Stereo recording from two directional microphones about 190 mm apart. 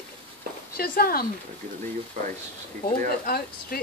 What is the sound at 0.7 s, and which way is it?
Speech, 50° left (ahead or behind).